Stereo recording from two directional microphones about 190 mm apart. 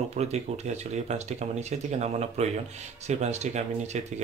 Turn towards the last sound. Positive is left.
turn(degrees=-35)  # may be behind; listen again after turning